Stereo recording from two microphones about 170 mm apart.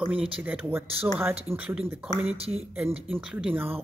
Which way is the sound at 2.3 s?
35° right (ahead or behind).